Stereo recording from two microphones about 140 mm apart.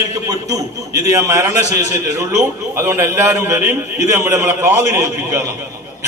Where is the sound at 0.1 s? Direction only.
25° right (ahead or behind).